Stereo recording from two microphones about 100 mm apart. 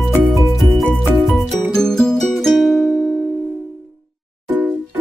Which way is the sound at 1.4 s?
5° left (ahead or behind).